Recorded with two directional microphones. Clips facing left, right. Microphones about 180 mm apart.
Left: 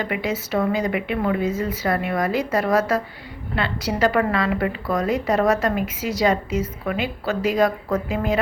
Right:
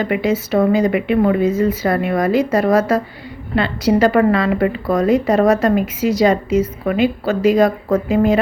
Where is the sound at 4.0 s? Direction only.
35° right (ahead or behind).